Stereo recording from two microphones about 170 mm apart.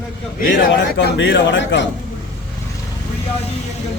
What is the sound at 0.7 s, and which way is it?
A man's voice, 90° left.